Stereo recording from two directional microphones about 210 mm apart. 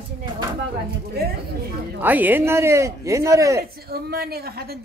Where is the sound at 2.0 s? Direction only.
10° right (ahead or behind).